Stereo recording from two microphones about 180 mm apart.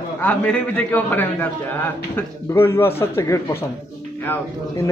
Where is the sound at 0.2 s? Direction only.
10° left (ahead or behind).